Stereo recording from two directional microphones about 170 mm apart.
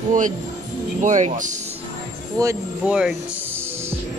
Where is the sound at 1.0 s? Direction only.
45° right (ahead or behind).